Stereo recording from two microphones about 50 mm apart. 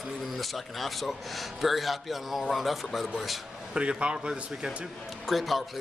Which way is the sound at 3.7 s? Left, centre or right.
Centre.